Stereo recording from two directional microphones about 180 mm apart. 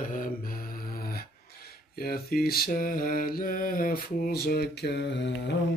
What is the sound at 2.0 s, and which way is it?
Mantra, 55° left (ahead or behind).